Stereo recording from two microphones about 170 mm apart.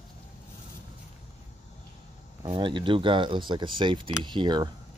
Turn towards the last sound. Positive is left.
turn(degrees=-25)  # may be behind; listen again after turning